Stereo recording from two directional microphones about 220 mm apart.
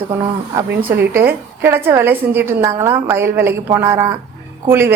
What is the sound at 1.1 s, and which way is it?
A woman's voice, 10° right (ahead or behind).